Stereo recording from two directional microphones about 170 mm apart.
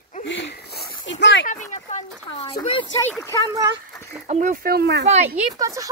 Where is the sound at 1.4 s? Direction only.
45° left (ahead or behind).